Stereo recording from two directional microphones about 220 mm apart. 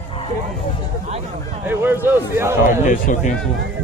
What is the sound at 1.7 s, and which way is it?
Speech, 10° right (ahead or behind).